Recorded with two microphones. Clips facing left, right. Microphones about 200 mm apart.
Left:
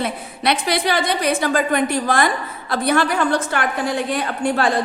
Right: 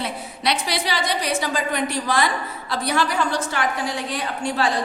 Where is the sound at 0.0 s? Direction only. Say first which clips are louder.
Left 4 dB; 55° left (ahead or behind).